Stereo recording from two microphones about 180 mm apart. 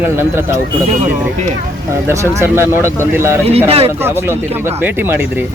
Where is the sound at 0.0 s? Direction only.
15° right (ahead or behind).